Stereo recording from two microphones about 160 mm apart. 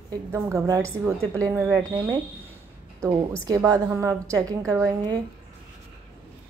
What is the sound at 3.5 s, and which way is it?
A woman's voice, 20° right (ahead or behind).